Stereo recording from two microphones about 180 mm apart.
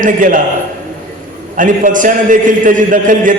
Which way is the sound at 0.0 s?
45° right (ahead or behind).